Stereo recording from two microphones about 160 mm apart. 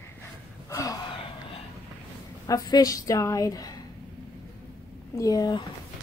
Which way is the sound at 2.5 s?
25° left (ahead or behind).